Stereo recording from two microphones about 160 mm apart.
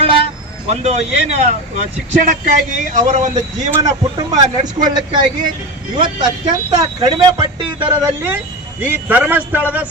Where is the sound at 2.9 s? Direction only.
50° right (ahead or behind).